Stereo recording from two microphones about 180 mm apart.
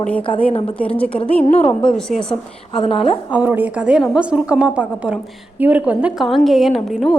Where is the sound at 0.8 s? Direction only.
5° left (ahead or behind).